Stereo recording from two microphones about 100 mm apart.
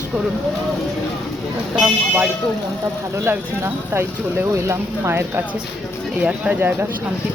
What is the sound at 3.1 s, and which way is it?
Speech, 20° right (ahead or behind).